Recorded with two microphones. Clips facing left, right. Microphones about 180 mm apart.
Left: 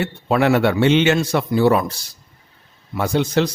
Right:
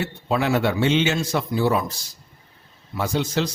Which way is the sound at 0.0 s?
65° left (ahead or behind).